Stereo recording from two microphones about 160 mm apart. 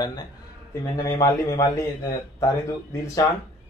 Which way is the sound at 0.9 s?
20° left (ahead or behind).